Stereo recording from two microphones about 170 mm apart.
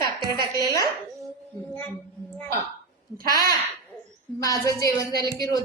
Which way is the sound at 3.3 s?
60° right (ahead or behind).